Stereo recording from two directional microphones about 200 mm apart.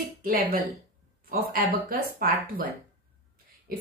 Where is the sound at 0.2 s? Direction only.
45° right (ahead or behind).